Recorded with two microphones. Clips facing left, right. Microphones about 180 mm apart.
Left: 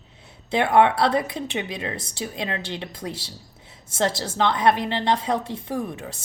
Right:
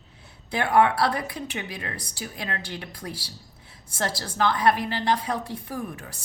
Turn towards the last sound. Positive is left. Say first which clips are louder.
# left 5 dB
turn(degrees=25)  # may be behind; listen again after turning